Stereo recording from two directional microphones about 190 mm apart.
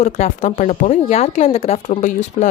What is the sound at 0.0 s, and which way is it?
Speech, 40° left (ahead or behind).